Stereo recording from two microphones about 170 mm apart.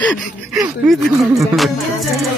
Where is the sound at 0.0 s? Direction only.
5° left (ahead or behind).